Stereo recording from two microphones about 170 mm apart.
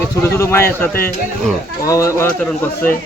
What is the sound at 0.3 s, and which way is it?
Speech, 15° left (ahead or behind).